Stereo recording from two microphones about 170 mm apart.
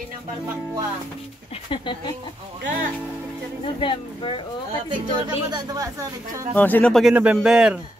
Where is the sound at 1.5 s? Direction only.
30° left (ahead or behind).